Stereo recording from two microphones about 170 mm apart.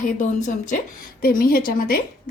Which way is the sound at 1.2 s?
60° left (ahead or behind).